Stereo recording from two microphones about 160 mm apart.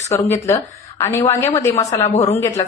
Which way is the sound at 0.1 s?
20° left (ahead or behind).